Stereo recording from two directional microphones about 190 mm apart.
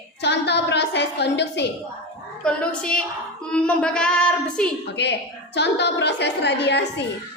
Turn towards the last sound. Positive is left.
turn(degrees=65)  # may be behind; listen again after turning